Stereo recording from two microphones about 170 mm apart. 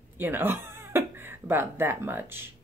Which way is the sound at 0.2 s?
10° right (ahead or behind).